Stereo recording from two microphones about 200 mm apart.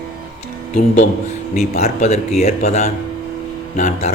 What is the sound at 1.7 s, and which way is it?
A man's voice, 35° left (ahead or behind).